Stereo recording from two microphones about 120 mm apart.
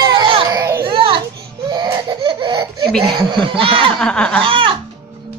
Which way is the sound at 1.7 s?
40° right (ahead or behind).